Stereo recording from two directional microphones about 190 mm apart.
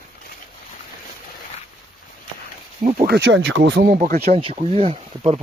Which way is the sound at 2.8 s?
40° right (ahead or behind).